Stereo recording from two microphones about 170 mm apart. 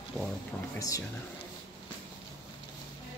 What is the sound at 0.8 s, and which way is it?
Speech, 20° left (ahead or behind).